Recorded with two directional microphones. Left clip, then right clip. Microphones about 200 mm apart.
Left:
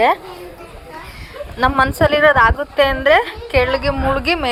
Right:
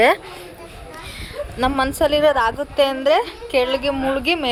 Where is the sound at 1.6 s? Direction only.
15° right (ahead or behind).